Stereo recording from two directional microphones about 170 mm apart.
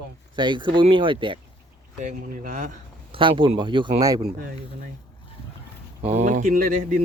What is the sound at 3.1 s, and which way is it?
Speech, 30° right (ahead or behind).